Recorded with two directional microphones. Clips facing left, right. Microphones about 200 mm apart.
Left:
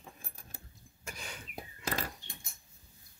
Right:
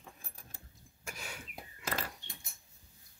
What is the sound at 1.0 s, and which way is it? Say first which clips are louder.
Cough: even; 5° right (ahead or behind).